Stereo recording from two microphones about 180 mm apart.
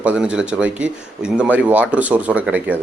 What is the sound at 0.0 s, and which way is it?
Speech, 5° right (ahead or behind).